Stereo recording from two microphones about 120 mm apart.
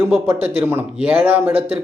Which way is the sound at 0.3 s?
15° right (ahead or behind).